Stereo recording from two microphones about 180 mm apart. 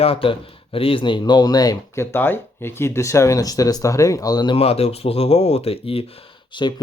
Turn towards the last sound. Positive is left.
turn(degrees=25)  # may be behind; listen again after turning